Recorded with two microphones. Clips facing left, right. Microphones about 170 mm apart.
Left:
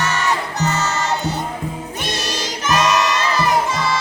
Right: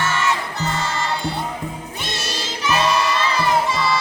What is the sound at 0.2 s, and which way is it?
Crowd, 40° left (ahead or behind).